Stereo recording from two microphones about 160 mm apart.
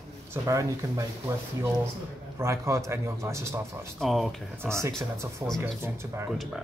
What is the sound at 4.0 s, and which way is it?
Speech, centre (ahead or behind).